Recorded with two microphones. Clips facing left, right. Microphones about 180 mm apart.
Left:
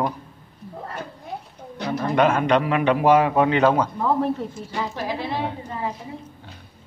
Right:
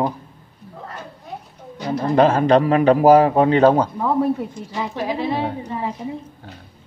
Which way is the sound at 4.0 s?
10° right (ahead or behind).